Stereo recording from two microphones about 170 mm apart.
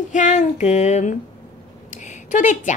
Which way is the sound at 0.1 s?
45° left (ahead or behind).